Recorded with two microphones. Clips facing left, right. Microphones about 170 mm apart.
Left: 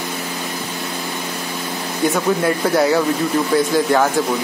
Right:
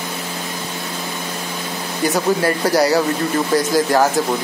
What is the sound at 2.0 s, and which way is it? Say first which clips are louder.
Speech: even; centre (ahead or behind).